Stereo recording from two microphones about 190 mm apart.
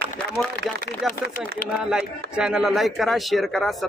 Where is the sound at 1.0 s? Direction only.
Centre (ahead or behind).